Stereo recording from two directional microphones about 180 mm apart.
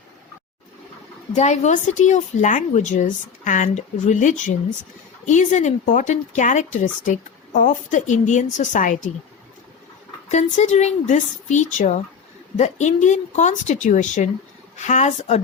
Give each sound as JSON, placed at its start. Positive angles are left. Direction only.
{"t": 1.4, "sound": "a woman's voice", "side_deg": 40}
{"t": 10.2, "sound": "a woman's voice", "side_deg": 40}